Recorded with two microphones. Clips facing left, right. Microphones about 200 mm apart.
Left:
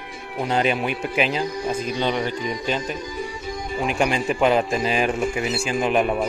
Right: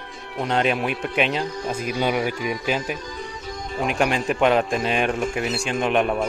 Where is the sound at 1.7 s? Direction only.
10° right (ahead or behind).